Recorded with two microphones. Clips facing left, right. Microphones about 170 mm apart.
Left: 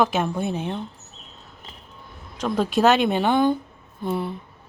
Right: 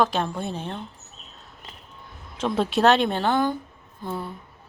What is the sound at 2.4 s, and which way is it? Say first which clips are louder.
A woman's voice: left 1 dB; 5° right (ahead or behind).